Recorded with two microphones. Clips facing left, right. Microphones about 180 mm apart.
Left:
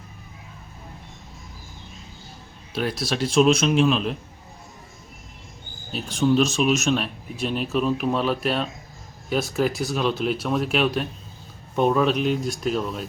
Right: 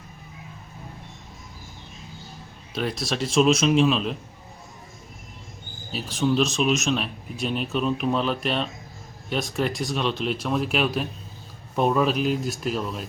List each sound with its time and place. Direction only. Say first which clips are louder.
2.7 s speech: left 2 dB; centre (ahead or behind)
5.9 s speech: left 3 dB; centre (ahead or behind)